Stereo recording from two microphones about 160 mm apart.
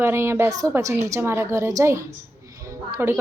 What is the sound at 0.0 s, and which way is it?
A woman's voice, 15° right (ahead or behind).